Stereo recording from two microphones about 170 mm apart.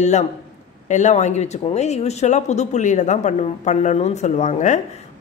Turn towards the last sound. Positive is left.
turn(degrees=45)  # may be behind; listen again after turning